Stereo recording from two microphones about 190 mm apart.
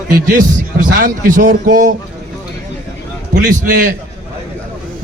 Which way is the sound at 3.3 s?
45° right (ahead or behind).